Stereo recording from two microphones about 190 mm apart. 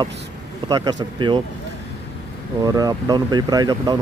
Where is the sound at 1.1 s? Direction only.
25° right (ahead or behind).